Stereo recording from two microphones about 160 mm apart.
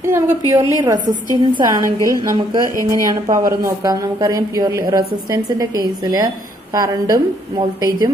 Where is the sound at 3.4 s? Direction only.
20° right (ahead or behind).